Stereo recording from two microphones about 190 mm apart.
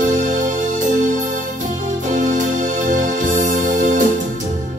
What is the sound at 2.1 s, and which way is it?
Music, 40° right (ahead or behind).